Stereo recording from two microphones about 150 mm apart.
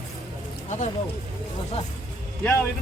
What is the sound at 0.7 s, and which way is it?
Speech, 50° left (ahead or behind).